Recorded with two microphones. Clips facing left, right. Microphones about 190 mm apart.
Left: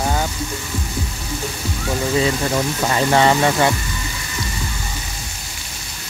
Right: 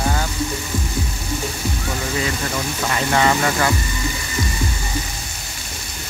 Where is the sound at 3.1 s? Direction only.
30° left (ahead or behind).